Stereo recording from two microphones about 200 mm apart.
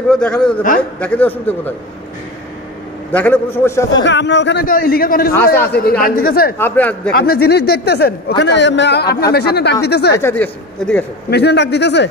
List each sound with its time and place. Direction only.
0.1 s a man's voice: 5° left (ahead or behind)
3.1 s a man's voice: 10° left (ahead or behind)
4.0 s a man's voice: 60° left (ahead or behind)
6.6 s a man's voice: 10° left (ahead or behind)
7.2 s a man's voice: 50° left (ahead or behind)
10.1 s a man's voice: 10° left (ahead or behind)
11.2 s a man's voice: 55° left (ahead or behind)